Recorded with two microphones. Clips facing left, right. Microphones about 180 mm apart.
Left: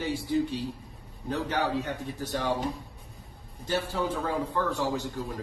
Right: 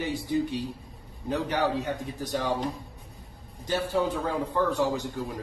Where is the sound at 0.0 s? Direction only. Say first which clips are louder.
Even; 15° right (ahead or behind).